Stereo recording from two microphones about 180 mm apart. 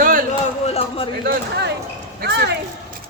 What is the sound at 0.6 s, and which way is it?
Speech, 35° left (ahead or behind).